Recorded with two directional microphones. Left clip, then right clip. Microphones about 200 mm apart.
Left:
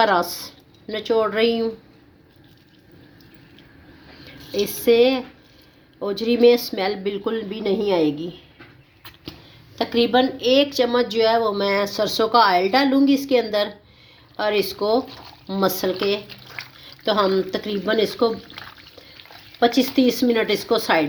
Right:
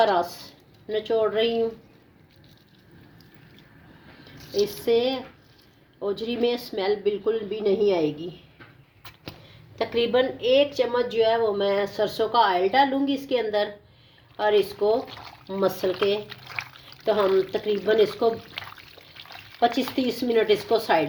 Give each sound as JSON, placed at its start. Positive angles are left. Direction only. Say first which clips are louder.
{"t": 0.0, "sound": "a woman's voice", "louder": "left 3 dB", "side_deg": 35}
{"t": 4.6, "sound": "a woman's voice", "louder": "left 6 dB", "side_deg": 30}
{"t": 9.7, "sound": "a woman's voice", "louder": "left 4 dB", "side_deg": 30}
{"t": 20.0, "sound": "a woman's voice", "louder": "left 3 dB", "side_deg": 30}